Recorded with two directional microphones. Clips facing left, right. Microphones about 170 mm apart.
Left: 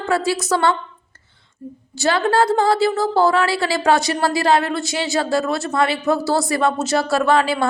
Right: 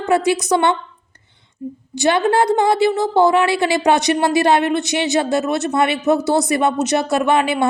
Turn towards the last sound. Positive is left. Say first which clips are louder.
# right 1 dB
turn(degrees=-20)  # may be behind; listen again after turning